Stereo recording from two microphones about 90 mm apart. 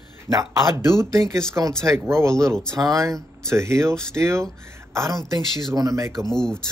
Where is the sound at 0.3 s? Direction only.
40° right (ahead or behind).